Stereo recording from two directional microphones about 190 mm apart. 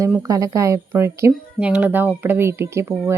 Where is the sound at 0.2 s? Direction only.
15° right (ahead or behind).